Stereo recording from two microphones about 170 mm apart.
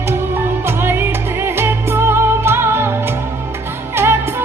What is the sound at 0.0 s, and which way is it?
Music, 15° right (ahead or behind).